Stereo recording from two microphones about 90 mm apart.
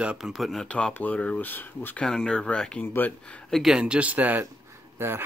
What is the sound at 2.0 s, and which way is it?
Speech, 5° left (ahead or behind).